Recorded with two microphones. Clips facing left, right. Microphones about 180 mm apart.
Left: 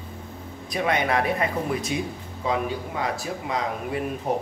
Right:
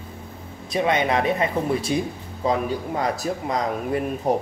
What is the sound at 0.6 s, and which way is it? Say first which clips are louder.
Speech: right 3 dB; 25° right (ahead or behind).